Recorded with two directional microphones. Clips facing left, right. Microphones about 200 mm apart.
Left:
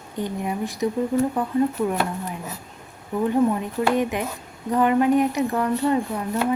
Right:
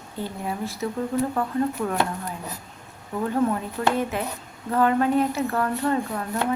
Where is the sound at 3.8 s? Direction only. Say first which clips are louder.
Left 3 dB; 15° left (ahead or behind).